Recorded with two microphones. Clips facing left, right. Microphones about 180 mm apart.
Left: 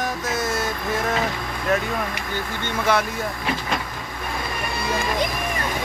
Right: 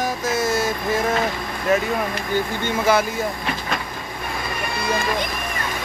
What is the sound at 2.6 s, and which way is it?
Speech, 5° right (ahead or behind).